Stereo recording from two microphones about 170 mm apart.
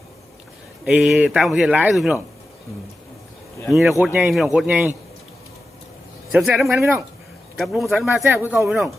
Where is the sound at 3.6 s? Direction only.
Centre (ahead or behind).